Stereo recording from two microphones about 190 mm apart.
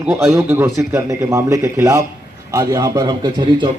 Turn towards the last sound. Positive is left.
turn(degrees=-25)  # may be behind; listen again after turning